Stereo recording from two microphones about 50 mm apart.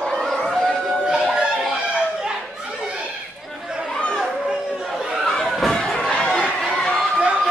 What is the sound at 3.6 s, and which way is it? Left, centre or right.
Chatter, centre.